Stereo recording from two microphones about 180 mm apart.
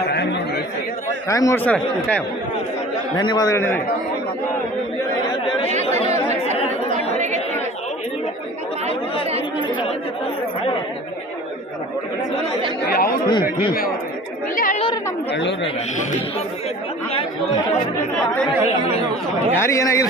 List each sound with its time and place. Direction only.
0.1 s chatter: 70° left (ahead or behind)
1.3 s speech: 15° left (ahead or behind)
3.2 s a man's voice: 20° left (ahead or behind)
6.9 s chatter: 40° right (ahead or behind)
12.8 s speech: 55° left (ahead or behind)
13.3 s a man's voice: 25° left (ahead or behind)
14.5 s chatter: 50° left (ahead or behind)
15.3 s speech: 90° left
17.1 s chatter: 30° left (ahead or behind)
19.5 s speech: 15° left (ahead or behind)